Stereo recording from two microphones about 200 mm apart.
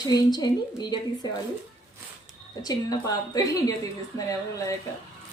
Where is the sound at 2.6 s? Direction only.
20° left (ahead or behind).